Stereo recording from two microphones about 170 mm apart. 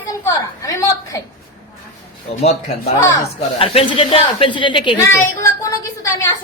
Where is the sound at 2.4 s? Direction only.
40° left (ahead or behind).